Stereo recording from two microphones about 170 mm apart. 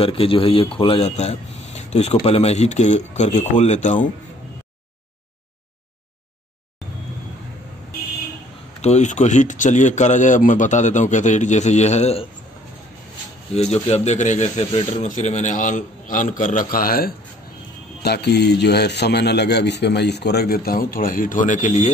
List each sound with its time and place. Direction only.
0.0 s a man's voice: 35° left (ahead or behind)
8.8 s a man's voice: 45° left (ahead or behind)
13.6 s a man's voice: 40° left (ahead or behind); by 17.1 s 60° left (ahead or behind)
18.0 s a man's voice: 75° left (ahead or behind); by 21.9 s 45° left (ahead or behind)